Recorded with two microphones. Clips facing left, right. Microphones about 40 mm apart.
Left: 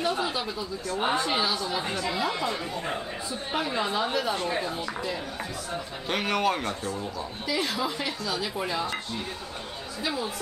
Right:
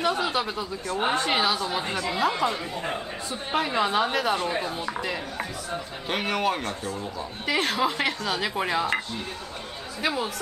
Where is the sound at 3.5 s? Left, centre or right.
Right.